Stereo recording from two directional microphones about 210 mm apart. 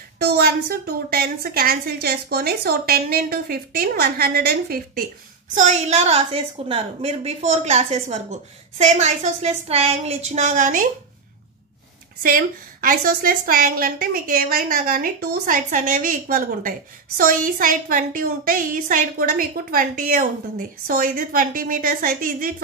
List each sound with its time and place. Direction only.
0.2 s a woman's voice: 45° right (ahead or behind)
5.5 s a woman's voice: 35° right (ahead or behind)
12.2 s a woman's voice: 40° right (ahead or behind)